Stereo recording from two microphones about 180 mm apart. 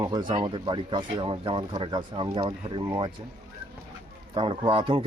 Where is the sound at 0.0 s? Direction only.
20° right (ahead or behind).